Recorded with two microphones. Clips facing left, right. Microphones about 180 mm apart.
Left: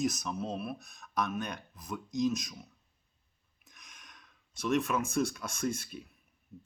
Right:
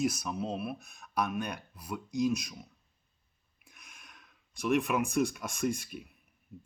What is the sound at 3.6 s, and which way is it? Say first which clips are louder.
Speech: right 1 dB; 10° right (ahead or behind).